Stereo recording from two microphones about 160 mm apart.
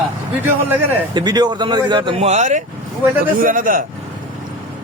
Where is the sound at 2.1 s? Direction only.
45° right (ahead or behind).